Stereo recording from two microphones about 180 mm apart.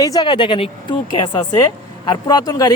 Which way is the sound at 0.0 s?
20° left (ahead or behind).